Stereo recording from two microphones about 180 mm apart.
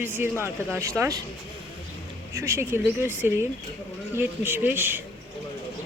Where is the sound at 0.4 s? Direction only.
15° right (ahead or behind).